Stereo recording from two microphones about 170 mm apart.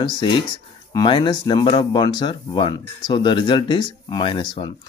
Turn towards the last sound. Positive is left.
turn(degrees=30)  # may be behind; listen again after turning